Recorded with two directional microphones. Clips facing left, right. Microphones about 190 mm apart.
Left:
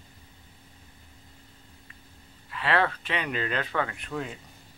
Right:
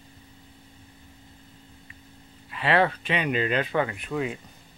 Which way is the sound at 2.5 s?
20° right (ahead or behind).